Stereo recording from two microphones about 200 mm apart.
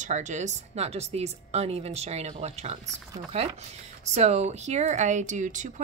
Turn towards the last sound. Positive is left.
turn(degrees=-40)  # may be behind; listen again after turning